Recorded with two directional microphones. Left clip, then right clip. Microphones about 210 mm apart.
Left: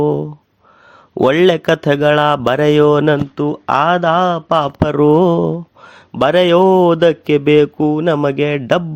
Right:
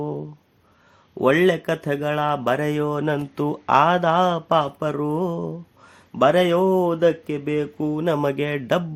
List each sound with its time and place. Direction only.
0.0 s a sound: 35° left (ahead or behind)
1.1 s speech: 40° left (ahead or behind)
3.3 s speech: 10° left (ahead or behind)
4.8 s speech: 40° left (ahead or behind); by 8.8 s 25° left (ahead or behind)